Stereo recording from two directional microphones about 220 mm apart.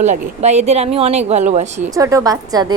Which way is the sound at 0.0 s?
30° right (ahead or behind).